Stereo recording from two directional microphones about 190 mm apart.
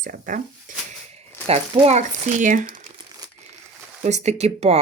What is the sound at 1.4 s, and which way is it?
Speech, 35° right (ahead or behind).